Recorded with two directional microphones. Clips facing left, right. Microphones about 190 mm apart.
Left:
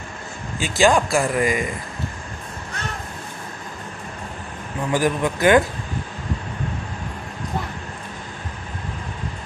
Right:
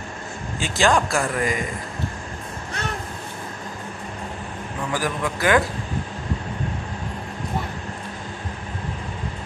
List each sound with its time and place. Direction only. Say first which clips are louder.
0.6 s speech: left 3 dB; 10° left (ahead or behind)
4.9 s a man's voice: left 6 dB; 20° left (ahead or behind)